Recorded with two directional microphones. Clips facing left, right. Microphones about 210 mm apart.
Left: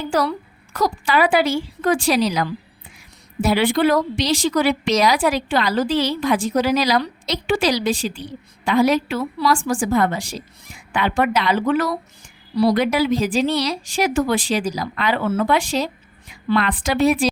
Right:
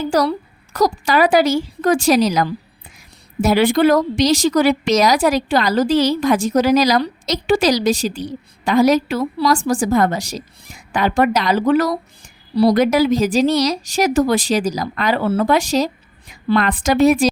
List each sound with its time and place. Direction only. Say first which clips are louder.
0.0 s a woman's voice: right 4 dB; 40° right (ahead or behind)